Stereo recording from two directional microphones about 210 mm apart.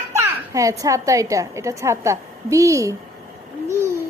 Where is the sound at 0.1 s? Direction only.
15° right (ahead or behind).